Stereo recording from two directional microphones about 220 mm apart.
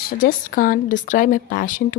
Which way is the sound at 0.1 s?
40° left (ahead or behind).